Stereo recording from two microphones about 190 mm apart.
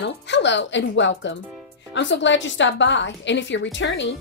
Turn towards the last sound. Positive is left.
turn(degrees=70)  # may be behind; listen again after turning